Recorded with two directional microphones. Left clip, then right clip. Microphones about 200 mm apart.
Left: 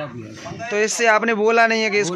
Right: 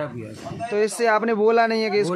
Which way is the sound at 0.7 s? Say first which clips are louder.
Left 3 dB; centre (ahead or behind).